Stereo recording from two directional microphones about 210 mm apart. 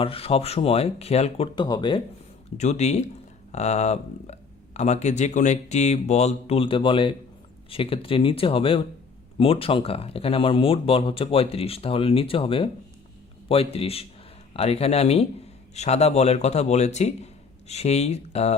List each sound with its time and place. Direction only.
0.0 s speech: 25° left (ahead or behind)
2.6 s speech: 35° left (ahead or behind)